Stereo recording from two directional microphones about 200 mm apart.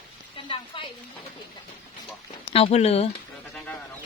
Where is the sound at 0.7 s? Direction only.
25° left (ahead or behind).